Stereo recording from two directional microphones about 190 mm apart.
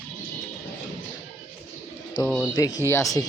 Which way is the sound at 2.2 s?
20° left (ahead or behind).